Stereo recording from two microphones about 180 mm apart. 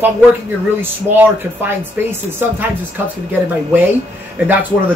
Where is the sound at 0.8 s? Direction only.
10° right (ahead or behind).